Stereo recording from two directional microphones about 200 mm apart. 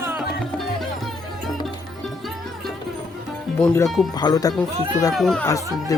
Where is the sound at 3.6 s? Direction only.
Centre (ahead or behind).